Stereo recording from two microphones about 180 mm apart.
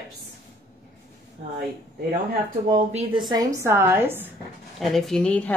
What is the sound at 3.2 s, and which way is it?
A woman's voice, 20° right (ahead or behind).